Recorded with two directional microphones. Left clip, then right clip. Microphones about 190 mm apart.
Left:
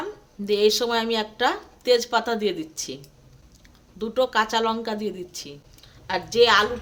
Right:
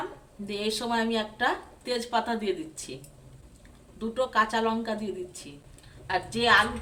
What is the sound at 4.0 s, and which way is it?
Speech, 60° left (ahead or behind).